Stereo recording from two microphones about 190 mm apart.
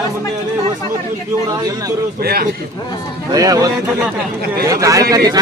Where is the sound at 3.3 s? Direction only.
20° right (ahead or behind).